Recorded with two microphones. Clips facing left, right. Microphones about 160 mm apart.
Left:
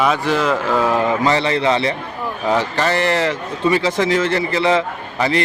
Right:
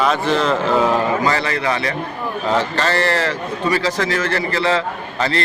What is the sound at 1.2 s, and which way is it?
Speech, 25° left (ahead or behind).